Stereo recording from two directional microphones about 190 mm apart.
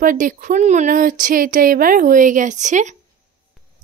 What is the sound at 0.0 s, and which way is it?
Speech, 45° right (ahead or behind).